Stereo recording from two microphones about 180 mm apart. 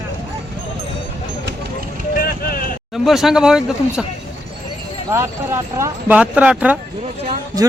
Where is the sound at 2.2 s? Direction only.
55° left (ahead or behind).